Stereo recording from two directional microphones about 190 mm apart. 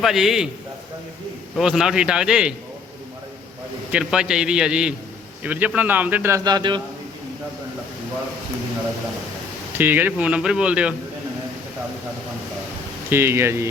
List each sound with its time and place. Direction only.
0.0 s a man's voice: centre (ahead or behind)
1.5 s a man's voice: centre (ahead or behind)
3.9 s a man's voice: 5° right (ahead or behind); by 6.8 s 25° right (ahead or behind)
9.7 s a man's voice: 10° right (ahead or behind)
13.1 s a man's voice: 15° right (ahead or behind)